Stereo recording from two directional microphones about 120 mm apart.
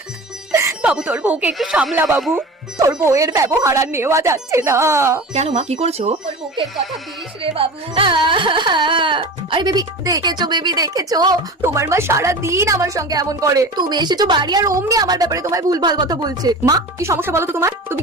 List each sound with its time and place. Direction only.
0.5 s music: 25° right (ahead or behind)
0.8 s speech: 10° right (ahead or behind)
3.0 s speech: 25° right (ahead or behind)
5.3 s speech: 75° right (ahead or behind)
7.5 s carnatic music: 50° right (ahead or behind)
11.6 s speech: 25° right (ahead or behind)